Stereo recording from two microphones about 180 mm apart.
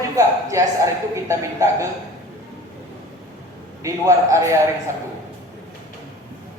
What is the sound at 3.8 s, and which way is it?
Speech, 15° right (ahead or behind).